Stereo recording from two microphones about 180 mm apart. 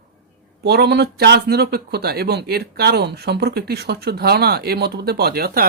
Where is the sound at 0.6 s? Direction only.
65° right (ahead or behind).